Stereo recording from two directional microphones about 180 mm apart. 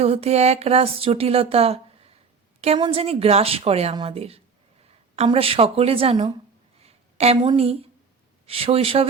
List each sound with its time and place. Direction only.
0.0 s speech: 35° right (ahead or behind)